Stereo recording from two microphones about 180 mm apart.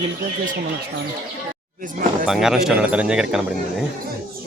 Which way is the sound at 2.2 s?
Centre (ahead or behind).